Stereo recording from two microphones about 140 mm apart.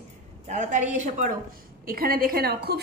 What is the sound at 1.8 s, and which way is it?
Speech, 90° right.